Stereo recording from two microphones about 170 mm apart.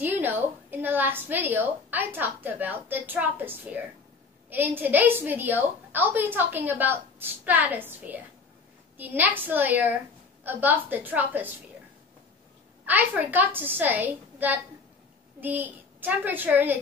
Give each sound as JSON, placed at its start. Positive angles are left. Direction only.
{"t": 0.0, "sound": "a woman's voice", "side_deg": -10}
{"t": 12.8, "sound": "a woman's voice", "side_deg": -10}